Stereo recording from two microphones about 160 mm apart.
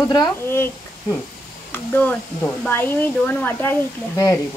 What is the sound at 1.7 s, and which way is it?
Speech, 10° left (ahead or behind).